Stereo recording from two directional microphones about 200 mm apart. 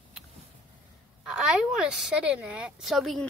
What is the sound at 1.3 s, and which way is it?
Speech, 5° right (ahead or behind).